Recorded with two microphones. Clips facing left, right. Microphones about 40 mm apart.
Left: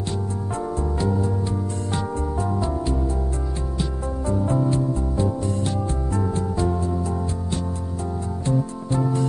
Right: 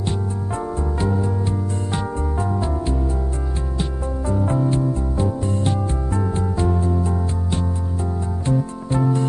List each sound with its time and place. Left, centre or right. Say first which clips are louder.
0.6 s music: even; right
2.7 s music: right 1 dB; centre
5.2 s music: right 3 dB; right
8.9 s music: right 3 dB; right